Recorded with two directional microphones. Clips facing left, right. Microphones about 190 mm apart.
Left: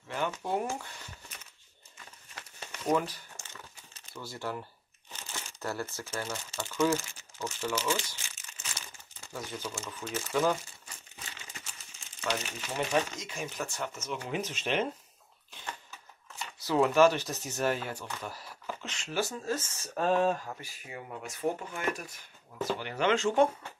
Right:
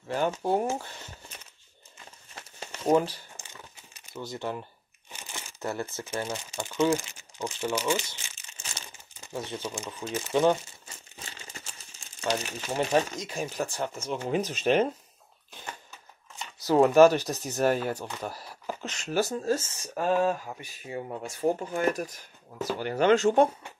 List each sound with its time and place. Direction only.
0.1 s speech: 35° right (ahead or behind)
2.3 s crumpling: 25° right (ahead or behind)
3.3 s crumpling: 15° right (ahead or behind)
6.2 s speech: 15° right (ahead or behind)
9.2 s speech: 25° right (ahead or behind)
11.1 s crumpling: 30° right (ahead or behind)
12.2 s speech: 35° right (ahead or behind)
14.4 s speech: 40° right (ahead or behind)
16.6 s speech: 40° right (ahead or behind); by 19.9 s 25° right (ahead or behind)
19.9 s speech: 5° right (ahead or behind)
20.5 s speech: 25° right (ahead or behind)